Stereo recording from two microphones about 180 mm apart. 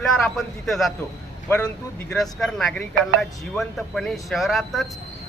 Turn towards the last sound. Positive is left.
turn(degrees=0)  # may be behind; listen again after turning